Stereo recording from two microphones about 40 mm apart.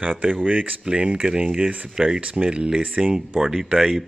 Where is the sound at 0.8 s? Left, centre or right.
Right.